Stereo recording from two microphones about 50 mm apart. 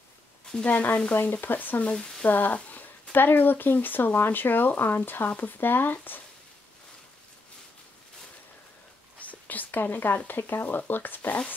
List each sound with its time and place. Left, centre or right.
0.7 s speech: left
1.9 s a sound: centre
2.2 s speech: left
9.2 s speech: left